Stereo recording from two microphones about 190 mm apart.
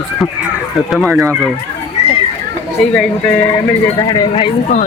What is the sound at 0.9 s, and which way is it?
Speech, centre (ahead or behind).